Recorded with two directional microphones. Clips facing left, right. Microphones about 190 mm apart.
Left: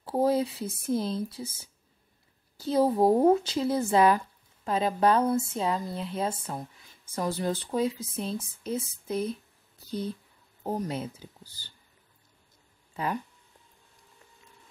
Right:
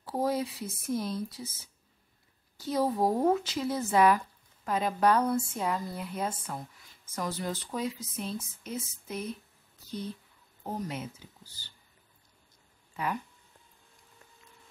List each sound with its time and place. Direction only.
0.0 s speech: 30° left (ahead or behind)
12.9 s speech: 30° left (ahead or behind)